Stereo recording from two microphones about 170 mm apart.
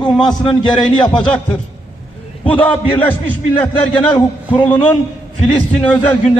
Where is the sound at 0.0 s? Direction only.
25° left (ahead or behind).